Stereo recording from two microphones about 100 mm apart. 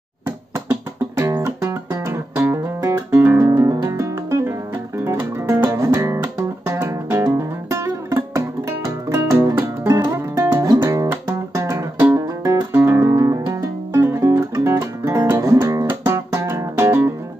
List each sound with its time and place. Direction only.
1.4 s music: 30° right (ahead or behind)